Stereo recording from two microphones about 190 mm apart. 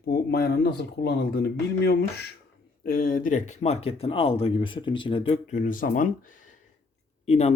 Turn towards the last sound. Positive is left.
turn(degrees=35)  # may be behind; listen again after turning